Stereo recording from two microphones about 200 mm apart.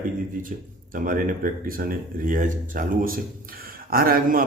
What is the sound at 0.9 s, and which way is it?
Speech, 45° right (ahead or behind).